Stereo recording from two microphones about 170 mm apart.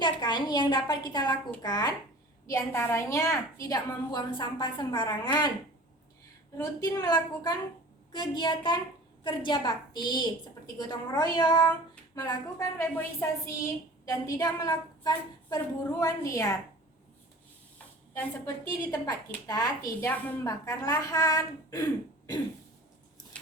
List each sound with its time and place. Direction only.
0.0 s a woman's voice: 25° left (ahead or behind)
6.6 s a woman's voice: 20° left (ahead or behind)
18.1 s a woman's voice: 15° left (ahead or behind)